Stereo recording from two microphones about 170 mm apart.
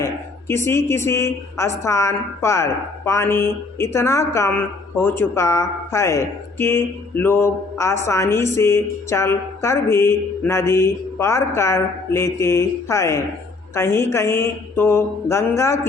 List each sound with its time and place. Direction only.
0.0 s a woman's voice: 15° left (ahead or behind)